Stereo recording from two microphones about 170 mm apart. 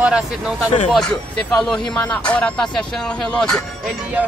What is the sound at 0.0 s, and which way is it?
A man's voice, 5° right (ahead or behind).